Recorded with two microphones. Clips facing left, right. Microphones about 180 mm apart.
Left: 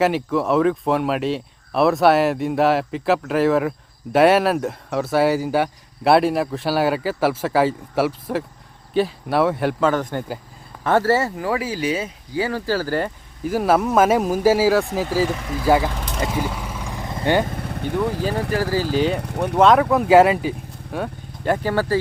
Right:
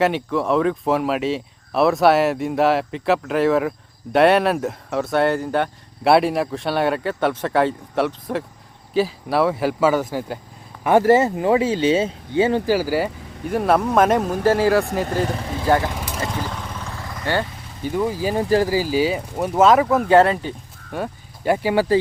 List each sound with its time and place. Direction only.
0.0 s speech: centre (ahead or behind)
10.8 s speech: 15° right (ahead or behind)
13.5 s speech: centre (ahead or behind)
15.3 s speech: 30° right (ahead or behind)
15.6 s speech: 10° left (ahead or behind)
15.9 s vehicle: 5° right (ahead or behind)
16.3 s vehicle: 10° left (ahead or behind)
17.4 s vehicle: 60° left (ahead or behind)
18.6 s speech: 10° right (ahead or behind)